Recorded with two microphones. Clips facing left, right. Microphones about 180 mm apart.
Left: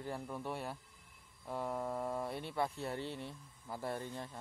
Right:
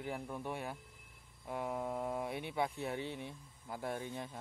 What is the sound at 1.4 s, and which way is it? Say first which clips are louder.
Speech: even; 5° right (ahead or behind).